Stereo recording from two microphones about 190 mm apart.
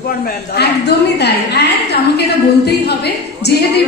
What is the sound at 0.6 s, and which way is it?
A woman's voice, 60° left (ahead or behind).